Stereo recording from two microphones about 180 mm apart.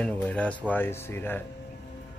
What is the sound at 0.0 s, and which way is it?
Speech, 5° left (ahead or behind).